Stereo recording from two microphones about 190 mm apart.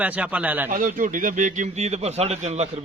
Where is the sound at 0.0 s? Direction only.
5° right (ahead or behind).